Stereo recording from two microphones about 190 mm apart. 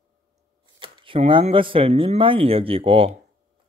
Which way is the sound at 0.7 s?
25° right (ahead or behind).